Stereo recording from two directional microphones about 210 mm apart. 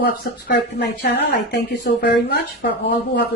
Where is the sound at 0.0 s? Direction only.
50° left (ahead or behind).